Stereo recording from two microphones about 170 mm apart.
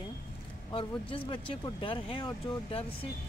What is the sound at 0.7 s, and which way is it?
Speech, 30° left (ahead or behind).